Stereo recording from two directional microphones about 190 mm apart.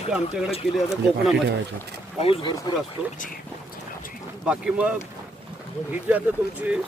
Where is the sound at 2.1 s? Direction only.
30° left (ahead or behind).